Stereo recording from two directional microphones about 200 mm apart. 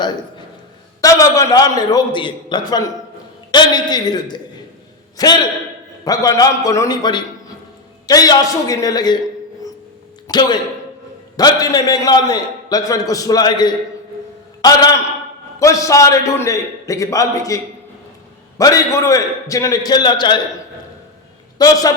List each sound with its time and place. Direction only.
1.0 s a man's voice: 15° left (ahead or behind)
10.2 s a man's voice: 20° left (ahead or behind)
21.6 s a man's voice: 20° left (ahead or behind)